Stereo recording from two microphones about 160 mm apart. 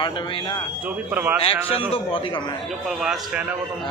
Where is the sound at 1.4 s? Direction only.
35° left (ahead or behind).